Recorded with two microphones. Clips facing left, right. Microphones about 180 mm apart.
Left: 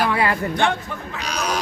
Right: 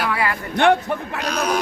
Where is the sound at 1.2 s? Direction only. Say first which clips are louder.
Right 2 dB; 50° right (ahead or behind).